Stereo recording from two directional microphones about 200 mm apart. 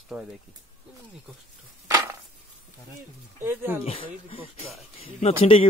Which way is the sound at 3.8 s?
30° left (ahead or behind).